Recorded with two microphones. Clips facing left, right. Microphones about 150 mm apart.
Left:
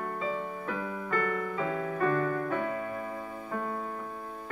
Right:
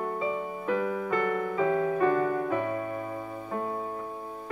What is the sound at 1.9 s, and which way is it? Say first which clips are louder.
Music: right 3 dB; 20° right (ahead or behind).